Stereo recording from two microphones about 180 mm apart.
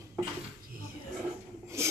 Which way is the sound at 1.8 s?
15° right (ahead or behind).